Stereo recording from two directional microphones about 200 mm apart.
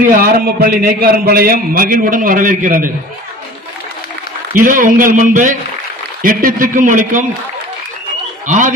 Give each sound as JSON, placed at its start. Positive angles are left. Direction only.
{"t": 0.0, "sound": "a man's voice", "side_deg": -45}
{"t": 4.6, "sound": "a man's voice", "side_deg": -40}
{"t": 8.5, "sound": "a man's voice", "side_deg": -40}